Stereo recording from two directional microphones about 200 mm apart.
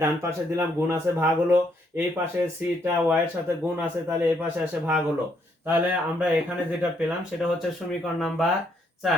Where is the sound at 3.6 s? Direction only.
10° right (ahead or behind).